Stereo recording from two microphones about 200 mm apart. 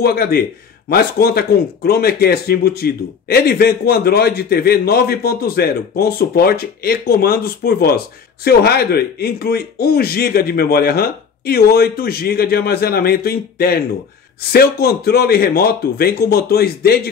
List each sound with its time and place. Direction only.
0.0 s a man's voice: 50° left (ahead or behind)